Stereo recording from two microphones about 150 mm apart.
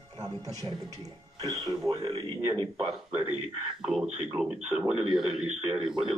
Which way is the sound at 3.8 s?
5° right (ahead or behind).